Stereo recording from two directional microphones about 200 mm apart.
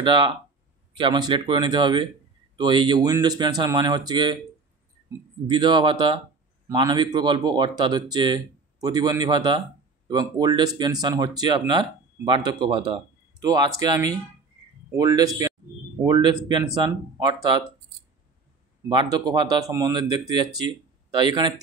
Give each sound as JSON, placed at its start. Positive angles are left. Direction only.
{"t": 0.0, "sound": "speech", "side_deg": -25}
{"t": 18.9, "sound": "speech", "side_deg": -20}